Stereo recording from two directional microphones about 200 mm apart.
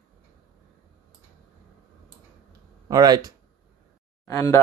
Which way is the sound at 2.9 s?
20° right (ahead or behind).